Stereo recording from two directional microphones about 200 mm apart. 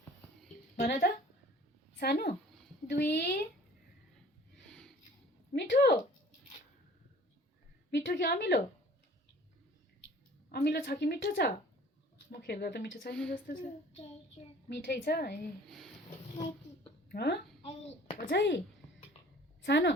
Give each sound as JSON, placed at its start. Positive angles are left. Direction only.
{"t": 0.8, "sound": "a woman's voice", "side_deg": 45}
{"t": 5.5, "sound": "a sound", "side_deg": 55}
{"t": 7.9, "sound": "a sound", "side_deg": 55}
{"t": 10.5, "sound": "a woman's voice", "side_deg": 55}
{"t": 13.3, "sound": "a woman's voice", "side_deg": 40}
{"t": 14.7, "sound": "a woman's voice", "side_deg": 55}
{"t": 17.1, "sound": "speech", "side_deg": 55}
{"t": 17.6, "sound": "a sound", "side_deg": 30}
{"t": 18.3, "sound": "speech", "side_deg": 60}
{"t": 19.6, "sound": "speech", "side_deg": 60}